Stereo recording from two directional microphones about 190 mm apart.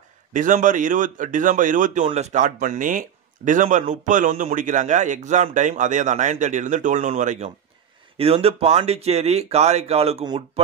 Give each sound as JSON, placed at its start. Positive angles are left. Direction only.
{"t": 0.3, "sound": "speech", "side_deg": -40}